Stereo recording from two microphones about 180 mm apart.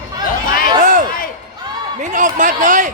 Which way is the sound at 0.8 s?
45° right (ahead or behind).